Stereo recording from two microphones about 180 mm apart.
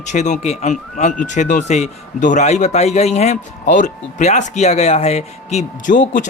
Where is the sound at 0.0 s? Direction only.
40° left (ahead or behind).